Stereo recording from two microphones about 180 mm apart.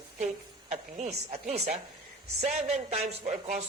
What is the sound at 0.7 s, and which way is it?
Speech, 35° right (ahead or behind).